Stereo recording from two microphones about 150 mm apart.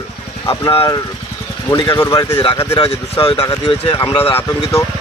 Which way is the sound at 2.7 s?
40° left (ahead or behind).